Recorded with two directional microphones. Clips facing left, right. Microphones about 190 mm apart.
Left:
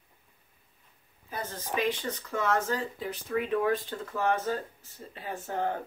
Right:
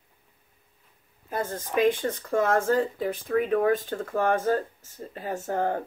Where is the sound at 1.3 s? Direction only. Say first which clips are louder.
Right 6 dB; 50° right (ahead or behind).